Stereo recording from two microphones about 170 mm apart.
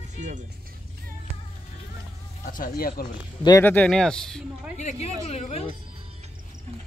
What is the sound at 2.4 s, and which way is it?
Speech, 55° left (ahead or behind).